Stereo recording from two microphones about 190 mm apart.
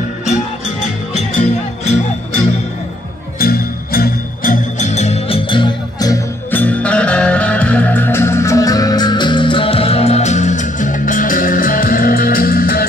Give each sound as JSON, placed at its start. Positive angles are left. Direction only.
{"t": 1.1, "sound": "music", "side_deg": 35}
{"t": 3.3, "sound": "music", "side_deg": 50}
{"t": 6.6, "sound": "music", "side_deg": 5}